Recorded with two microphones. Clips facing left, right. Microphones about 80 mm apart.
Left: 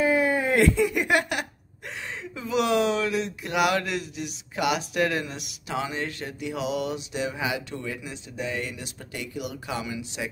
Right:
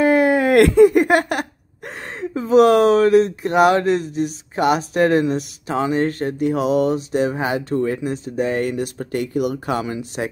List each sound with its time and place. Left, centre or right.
0.0 s speech: right